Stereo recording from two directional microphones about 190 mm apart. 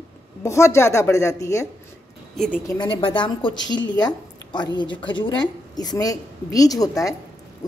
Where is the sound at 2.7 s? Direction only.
25° left (ahead or behind).